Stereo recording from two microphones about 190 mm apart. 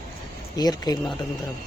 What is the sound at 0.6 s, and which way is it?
Speech, 20° left (ahead or behind).